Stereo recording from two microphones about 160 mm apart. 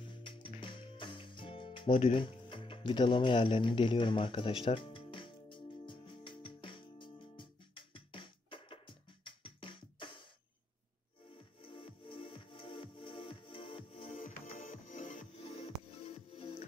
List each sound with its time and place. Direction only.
0.2 s music: 30° left (ahead or behind)
11.6 s music: 30° left (ahead or behind)
14.6 s music: 55° left (ahead or behind)
15.3 s music: 35° left (ahead or behind)